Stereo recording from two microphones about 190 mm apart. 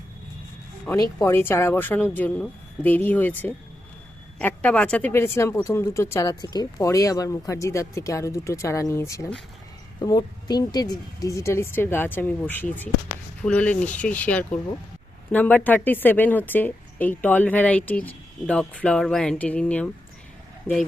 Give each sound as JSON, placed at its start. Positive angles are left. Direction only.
{"t": 0.9, "sound": "speech", "side_deg": 10}